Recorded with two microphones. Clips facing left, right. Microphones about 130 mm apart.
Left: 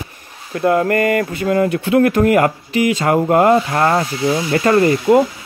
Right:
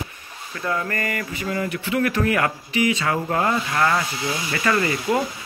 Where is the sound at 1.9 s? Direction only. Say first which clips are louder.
Left 9 dB; 45° left (ahead or behind).